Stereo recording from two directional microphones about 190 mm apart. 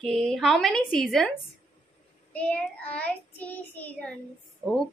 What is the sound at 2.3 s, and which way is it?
Child singing, 5° left (ahead or behind).